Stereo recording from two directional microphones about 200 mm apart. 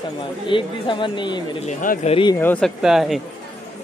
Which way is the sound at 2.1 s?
25° left (ahead or behind).